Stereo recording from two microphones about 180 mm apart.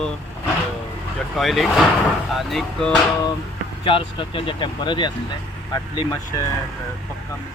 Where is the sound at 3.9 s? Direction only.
30° left (ahead or behind).